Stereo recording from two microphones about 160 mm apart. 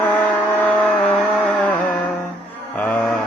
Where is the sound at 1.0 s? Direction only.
5° left (ahead or behind).